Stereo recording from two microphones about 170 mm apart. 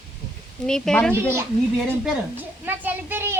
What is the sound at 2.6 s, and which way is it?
Speech, 10° right (ahead or behind).